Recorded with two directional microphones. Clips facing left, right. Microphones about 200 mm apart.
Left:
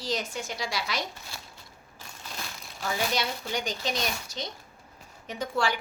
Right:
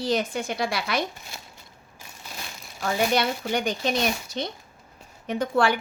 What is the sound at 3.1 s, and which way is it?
Speech, 60° right (ahead or behind).